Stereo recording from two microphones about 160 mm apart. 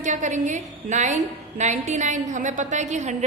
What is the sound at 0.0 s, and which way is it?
A woman's voice, 50° right (ahead or behind).